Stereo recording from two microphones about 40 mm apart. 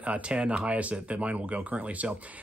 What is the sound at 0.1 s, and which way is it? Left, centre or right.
A man's voice, right.